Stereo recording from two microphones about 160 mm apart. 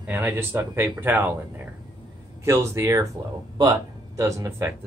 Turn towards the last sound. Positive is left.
turn(degrees=-20)  # may be behind; listen again after turning